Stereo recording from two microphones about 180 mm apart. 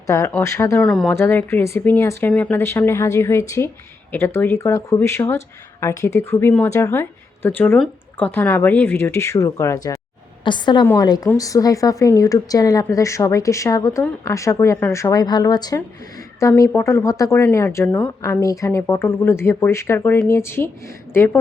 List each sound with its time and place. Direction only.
0.1 s speech: 15° left (ahead or behind)
0.9 s a woman's voice: 5° left (ahead or behind)